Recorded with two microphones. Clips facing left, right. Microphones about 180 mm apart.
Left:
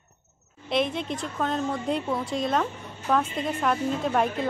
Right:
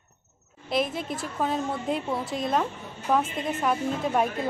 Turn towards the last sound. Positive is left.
turn(degrees=0)  # may be behind; listen again after turning